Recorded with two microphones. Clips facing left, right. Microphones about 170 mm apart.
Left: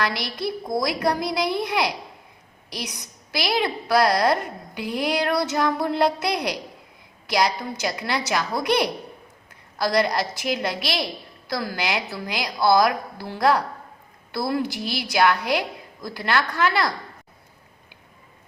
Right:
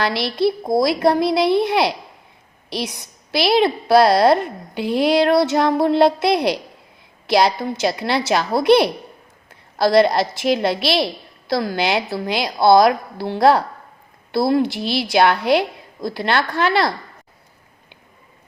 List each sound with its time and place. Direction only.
0.0 s a woman's voice: 30° right (ahead or behind)